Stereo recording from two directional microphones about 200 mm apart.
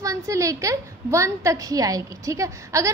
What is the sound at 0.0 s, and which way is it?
A woman's voice, 15° right (ahead or behind).